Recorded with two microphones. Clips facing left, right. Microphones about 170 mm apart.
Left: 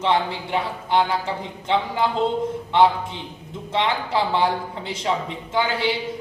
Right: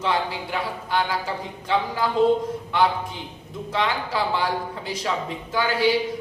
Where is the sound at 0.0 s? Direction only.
25° left (ahead or behind).